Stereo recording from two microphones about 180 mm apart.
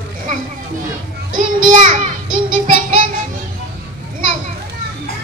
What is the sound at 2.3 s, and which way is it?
Music, 30° right (ahead or behind).